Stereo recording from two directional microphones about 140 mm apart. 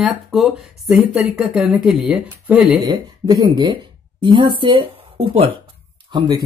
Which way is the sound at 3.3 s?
30° right (ahead or behind).